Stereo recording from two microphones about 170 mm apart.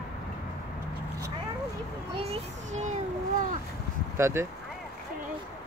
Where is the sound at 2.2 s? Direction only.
40° right (ahead or behind).